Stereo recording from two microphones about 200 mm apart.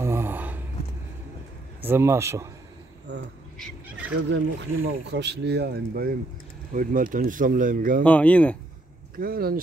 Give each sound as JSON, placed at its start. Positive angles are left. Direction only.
{"t": 0.0, "sound": "a sound", "side_deg": -10}
{"t": 1.8, "sound": "speech", "side_deg": -10}
{"t": 4.3, "sound": "speech", "side_deg": -75}
{"t": 8.0, "sound": "speech", "side_deg": 5}
{"t": 9.1, "sound": "speech", "side_deg": -45}